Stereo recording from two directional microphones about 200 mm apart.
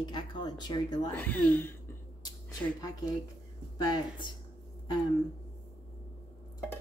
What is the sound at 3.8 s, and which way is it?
Speech, 20° left (ahead or behind).